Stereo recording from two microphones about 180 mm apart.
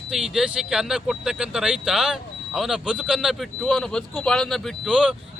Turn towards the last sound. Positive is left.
turn(degrees=-5)  # may be behind; listen again after turning